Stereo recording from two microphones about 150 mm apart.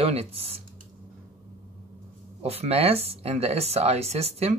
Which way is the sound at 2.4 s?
45° right (ahead or behind).